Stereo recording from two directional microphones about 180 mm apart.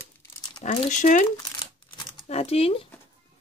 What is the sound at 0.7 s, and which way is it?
Speech, 45° left (ahead or behind).